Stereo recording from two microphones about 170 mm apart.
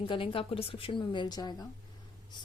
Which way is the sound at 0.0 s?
30° left (ahead or behind).